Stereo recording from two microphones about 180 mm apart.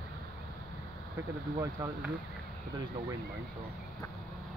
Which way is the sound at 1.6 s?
15° right (ahead or behind).